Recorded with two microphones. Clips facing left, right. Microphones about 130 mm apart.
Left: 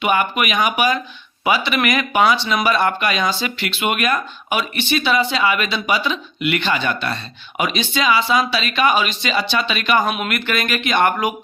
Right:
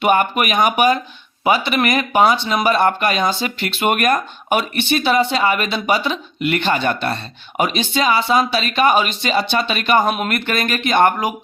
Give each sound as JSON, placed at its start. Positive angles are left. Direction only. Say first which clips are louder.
{"t": 0.0, "sound": "speech", "louder": "right 3 dB", "side_deg": -40}